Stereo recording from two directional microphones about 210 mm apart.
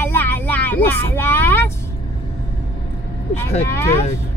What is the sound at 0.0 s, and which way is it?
Vehicle, 10° left (ahead or behind).